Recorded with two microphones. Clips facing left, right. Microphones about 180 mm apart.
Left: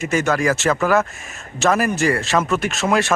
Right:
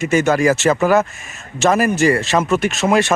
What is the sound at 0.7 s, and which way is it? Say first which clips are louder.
Speech: right 3 dB; 25° right (ahead or behind).